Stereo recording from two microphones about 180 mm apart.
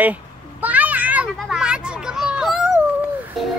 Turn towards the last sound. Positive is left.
turn(degrees=0)  # may be behind; listen again after turning